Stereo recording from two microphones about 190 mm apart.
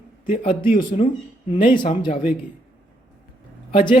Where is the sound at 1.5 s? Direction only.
25° left (ahead or behind).